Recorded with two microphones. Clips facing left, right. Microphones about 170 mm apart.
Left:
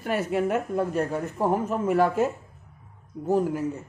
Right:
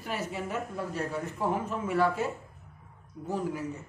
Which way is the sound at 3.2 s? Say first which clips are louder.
Left 9 dB; 45° left (ahead or behind).